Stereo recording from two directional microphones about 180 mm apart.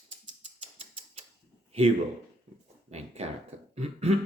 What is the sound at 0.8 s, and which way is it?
Typewriter, 35° right (ahead or behind).